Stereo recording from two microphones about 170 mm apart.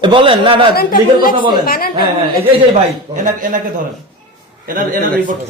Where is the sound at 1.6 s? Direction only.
60° left (ahead or behind).